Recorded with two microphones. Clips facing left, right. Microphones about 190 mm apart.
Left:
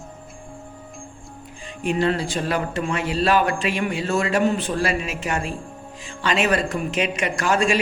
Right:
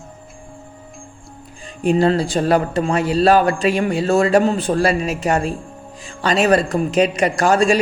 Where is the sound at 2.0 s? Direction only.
35° right (ahead or behind).